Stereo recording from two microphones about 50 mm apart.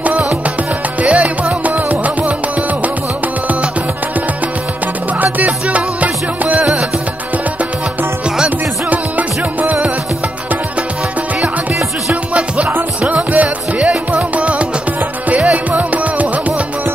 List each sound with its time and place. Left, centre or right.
1.0 s music: right
5.2 s music: right
6.6 s music: centre
8.9 s music: right
13.4 s music: right